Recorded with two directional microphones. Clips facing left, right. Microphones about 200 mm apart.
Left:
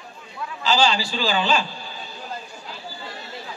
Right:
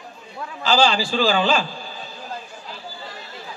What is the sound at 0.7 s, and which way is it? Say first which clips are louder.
A man's voice: right 2 dB; 50° right (ahead or behind).